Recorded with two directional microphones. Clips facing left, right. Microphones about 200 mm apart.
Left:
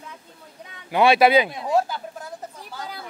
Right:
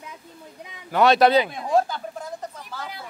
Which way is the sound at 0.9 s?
10° left (ahead or behind).